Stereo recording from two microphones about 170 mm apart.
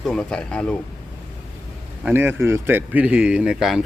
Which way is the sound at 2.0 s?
10° right (ahead or behind).